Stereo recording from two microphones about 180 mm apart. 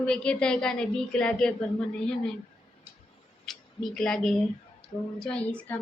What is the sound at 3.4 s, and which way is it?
A woman's voice, centre (ahead or behind).